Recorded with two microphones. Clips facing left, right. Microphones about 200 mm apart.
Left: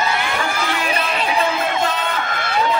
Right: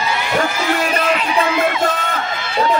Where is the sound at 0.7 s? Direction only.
45° right (ahead or behind).